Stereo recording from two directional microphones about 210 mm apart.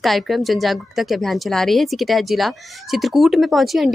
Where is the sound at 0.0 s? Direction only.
Centre (ahead or behind).